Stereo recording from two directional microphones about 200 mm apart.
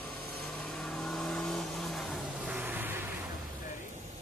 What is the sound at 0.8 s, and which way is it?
Vehicle, 5° left (ahead or behind).